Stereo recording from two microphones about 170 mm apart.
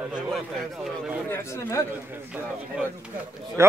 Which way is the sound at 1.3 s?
15° left (ahead or behind).